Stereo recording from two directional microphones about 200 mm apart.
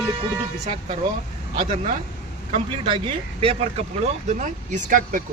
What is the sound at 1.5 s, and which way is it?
Speech, 40° right (ahead or behind).